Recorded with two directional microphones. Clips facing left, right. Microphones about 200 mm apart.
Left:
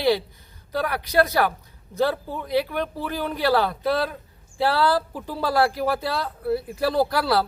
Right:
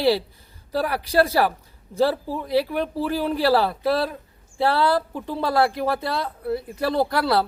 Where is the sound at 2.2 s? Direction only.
5° right (ahead or behind).